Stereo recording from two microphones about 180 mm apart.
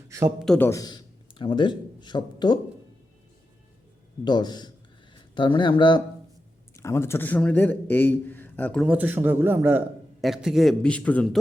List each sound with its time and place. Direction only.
0.1 s a man's voice: 15° right (ahead or behind)
0.3 s a man's voice: 5° left (ahead or behind)
0.7 s speech: 20° left (ahead or behind)
4.2 s speech: 25° left (ahead or behind)
6.7 s a man's voice: 15° left (ahead or behind)
8.9 s a man's voice: 10° right (ahead or behind); by 11.3 s 5° left (ahead or behind)